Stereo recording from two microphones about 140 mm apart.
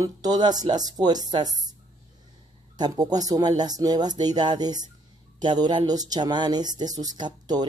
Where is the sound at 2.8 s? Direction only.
30° right (ahead or behind).